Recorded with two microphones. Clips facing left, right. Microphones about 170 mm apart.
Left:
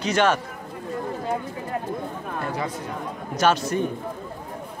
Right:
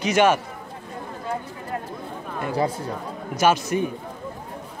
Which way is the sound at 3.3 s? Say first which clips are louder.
Right 1 dB; 10° right (ahead or behind).